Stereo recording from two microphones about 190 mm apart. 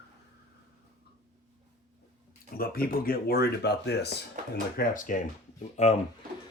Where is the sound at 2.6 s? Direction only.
50° left (ahead or behind).